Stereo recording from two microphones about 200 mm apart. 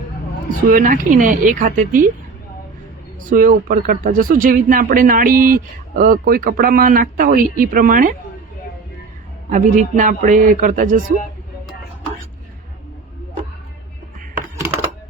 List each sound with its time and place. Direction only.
0.7 s speech: 45° right (ahead or behind)
3.2 s speech: 45° right (ahead or behind)
9.5 s a man's voice: 40° right (ahead or behind)